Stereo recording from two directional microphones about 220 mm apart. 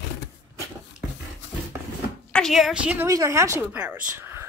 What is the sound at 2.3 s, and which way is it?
A woman's voice, 5° left (ahead or behind).